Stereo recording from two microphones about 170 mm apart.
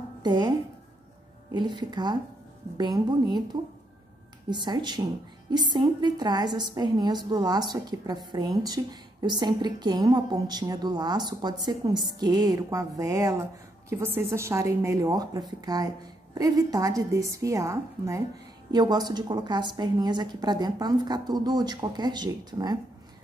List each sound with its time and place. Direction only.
0.2 s a woman's voice: 25° right (ahead or behind)
4.5 s a woman's voice: 25° right (ahead or behind)